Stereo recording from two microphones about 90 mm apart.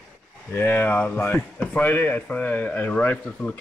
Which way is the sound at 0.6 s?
25° left (ahead or behind).